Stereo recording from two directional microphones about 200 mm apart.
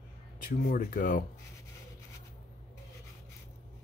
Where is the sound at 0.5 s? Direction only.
45° left (ahead or behind).